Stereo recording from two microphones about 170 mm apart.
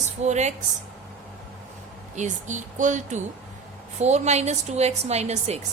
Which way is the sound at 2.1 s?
45° right (ahead or behind).